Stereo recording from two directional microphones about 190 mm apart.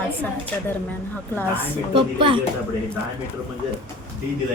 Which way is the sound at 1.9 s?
25° right (ahead or behind).